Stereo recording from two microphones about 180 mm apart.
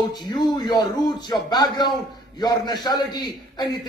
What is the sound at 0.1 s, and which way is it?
A man's voice, 20° left (ahead or behind).